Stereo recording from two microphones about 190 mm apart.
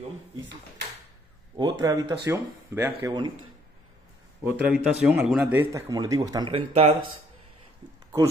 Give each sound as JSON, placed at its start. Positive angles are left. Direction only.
{"t": 1.6, "sound": "speech", "side_deg": -20}
{"t": 2.9, "sound": "speech", "side_deg": -25}
{"t": 4.5, "sound": "speech", "side_deg": -10}
{"t": 5.6, "sound": "speech", "side_deg": -15}